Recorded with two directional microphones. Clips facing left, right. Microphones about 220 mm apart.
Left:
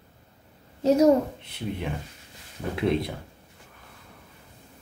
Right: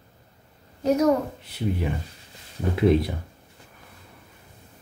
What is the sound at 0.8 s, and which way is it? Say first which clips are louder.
Speech: left 2 dB; 30° left (ahead or behind).